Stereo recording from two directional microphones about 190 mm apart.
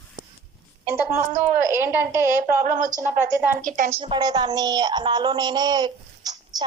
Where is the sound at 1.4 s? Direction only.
10° right (ahead or behind).